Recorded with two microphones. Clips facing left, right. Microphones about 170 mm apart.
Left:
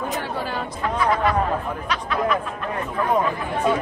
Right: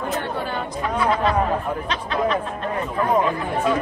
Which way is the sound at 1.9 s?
25° right (ahead or behind).